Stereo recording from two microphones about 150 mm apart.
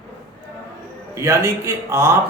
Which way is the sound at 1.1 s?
20° right (ahead or behind).